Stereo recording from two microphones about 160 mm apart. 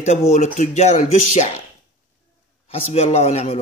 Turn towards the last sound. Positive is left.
turn(degrees=40)  # may be behind; listen again after turning